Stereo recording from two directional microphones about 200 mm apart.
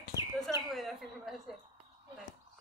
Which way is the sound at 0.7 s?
Centre (ahead or behind).